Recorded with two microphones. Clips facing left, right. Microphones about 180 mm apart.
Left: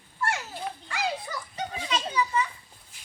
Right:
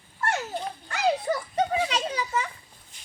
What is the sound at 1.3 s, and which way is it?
Children playing, 50° right (ahead or behind).